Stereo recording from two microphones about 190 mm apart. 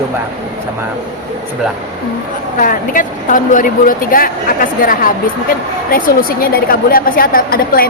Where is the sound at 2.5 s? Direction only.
45° left (ahead or behind).